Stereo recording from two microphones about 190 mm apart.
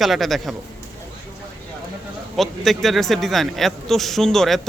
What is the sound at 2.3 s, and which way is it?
A man's voice, centre (ahead or behind).